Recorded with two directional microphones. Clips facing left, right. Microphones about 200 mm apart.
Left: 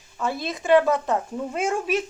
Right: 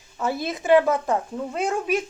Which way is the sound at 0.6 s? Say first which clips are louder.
Even; 15° right (ahead or behind).